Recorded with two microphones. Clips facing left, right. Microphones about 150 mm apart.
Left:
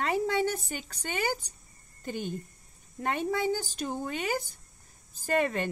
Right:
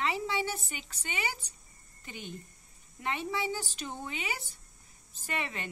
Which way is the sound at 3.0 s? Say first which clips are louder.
Left 5 dB; 45° left (ahead or behind).